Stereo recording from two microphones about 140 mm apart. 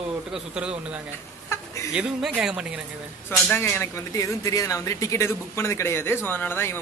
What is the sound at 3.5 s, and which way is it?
Speech, 15° left (ahead or behind).